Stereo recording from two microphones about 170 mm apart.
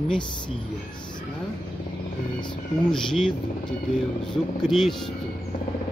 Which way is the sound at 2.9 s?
5° left (ahead or behind).